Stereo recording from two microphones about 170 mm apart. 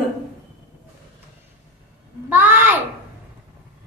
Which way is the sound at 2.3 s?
10° right (ahead or behind).